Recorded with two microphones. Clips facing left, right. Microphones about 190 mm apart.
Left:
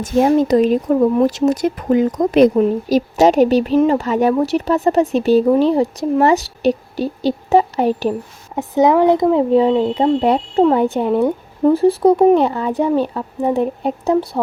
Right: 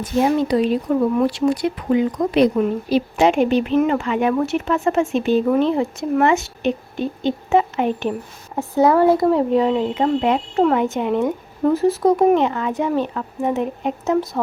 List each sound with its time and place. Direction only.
0.0 s speech: 45° left (ahead or behind)
8.5 s speech: 20° left (ahead or behind)
9.5 s speech: 30° left (ahead or behind)